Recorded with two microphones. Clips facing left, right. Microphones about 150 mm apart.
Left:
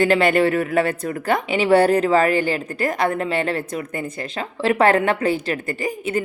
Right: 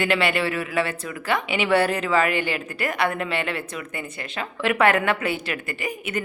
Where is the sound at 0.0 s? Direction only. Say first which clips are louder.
Left 6 dB; 40° left (ahead or behind).